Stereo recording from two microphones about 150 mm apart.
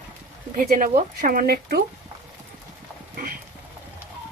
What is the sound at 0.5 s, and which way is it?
Speech, 60° right (ahead or behind).